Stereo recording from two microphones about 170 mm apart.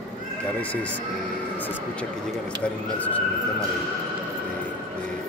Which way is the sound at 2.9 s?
10° left (ahead or behind).